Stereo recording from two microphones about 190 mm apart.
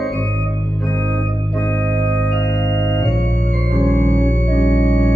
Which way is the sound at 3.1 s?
45° right (ahead or behind).